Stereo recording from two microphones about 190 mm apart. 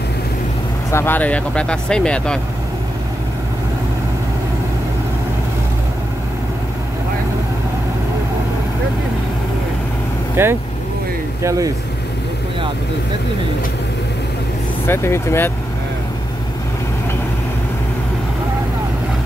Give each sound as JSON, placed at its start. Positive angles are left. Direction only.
{"t": 0.9, "sound": "speech", "side_deg": 10}
{"t": 10.3, "sound": "speech", "side_deg": -10}
{"t": 14.9, "sound": "speech", "side_deg": 10}